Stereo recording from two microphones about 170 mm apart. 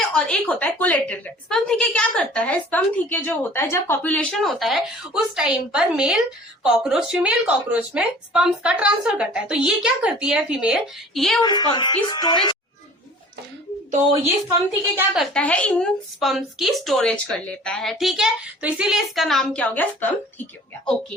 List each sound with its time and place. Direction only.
0.1 s a woman's voice: 5° left (ahead or behind)
11.3 s a woman's voice: 25° left (ahead or behind)
14.9 s a woman's voice: centre (ahead or behind)